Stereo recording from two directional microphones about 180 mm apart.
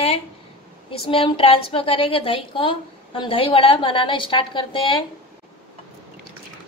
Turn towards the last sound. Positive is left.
turn(degrees=30)  # may be behind; listen again after turning